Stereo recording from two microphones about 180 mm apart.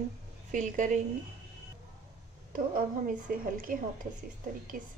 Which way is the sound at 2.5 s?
50° right (ahead or behind).